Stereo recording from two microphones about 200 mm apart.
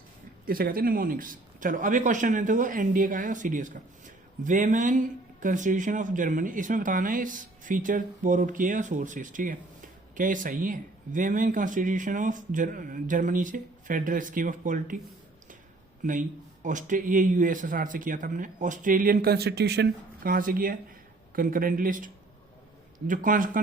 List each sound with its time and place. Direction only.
0.4 s a man's voice: 45° right (ahead or behind)
16.0 s a man's voice: 40° right (ahead or behind)